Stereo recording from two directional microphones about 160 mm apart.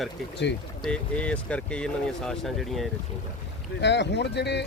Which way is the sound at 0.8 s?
5° left (ahead or behind).